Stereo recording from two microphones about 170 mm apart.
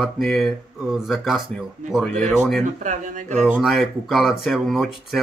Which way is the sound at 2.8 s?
50° right (ahead or behind).